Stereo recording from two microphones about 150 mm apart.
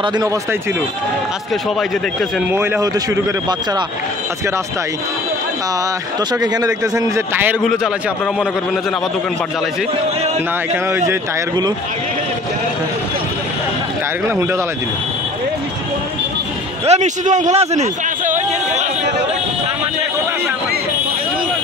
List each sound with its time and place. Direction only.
2.5 s a man's voice: 15° right (ahead or behind)
6.4 s a man's voice: 25° right (ahead or behind)
10.9 s a man's voice: 20° right (ahead or behind)
16.8 s a sound: 50° right (ahead or behind)